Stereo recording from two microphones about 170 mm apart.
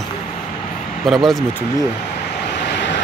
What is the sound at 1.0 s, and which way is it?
Speech, centre (ahead or behind).